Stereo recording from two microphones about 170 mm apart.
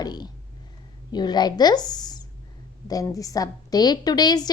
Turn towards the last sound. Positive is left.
turn(degrees=25)  # may be behind; listen again after turning